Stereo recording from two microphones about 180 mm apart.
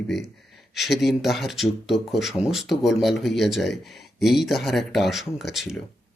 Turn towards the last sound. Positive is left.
turn(degrees=0)  # may be behind; listen again after turning